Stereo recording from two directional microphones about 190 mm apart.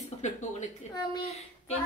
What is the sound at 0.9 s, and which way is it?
Speech, 20° left (ahead or behind).